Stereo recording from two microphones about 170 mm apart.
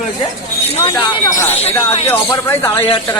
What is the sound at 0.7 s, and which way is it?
Speech, 35° left (ahead or behind).